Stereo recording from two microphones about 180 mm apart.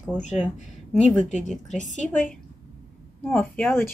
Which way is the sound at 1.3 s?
40° left (ahead or behind).